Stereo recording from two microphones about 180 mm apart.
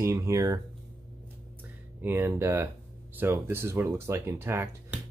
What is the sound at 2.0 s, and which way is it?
Speech, 15° right (ahead or behind).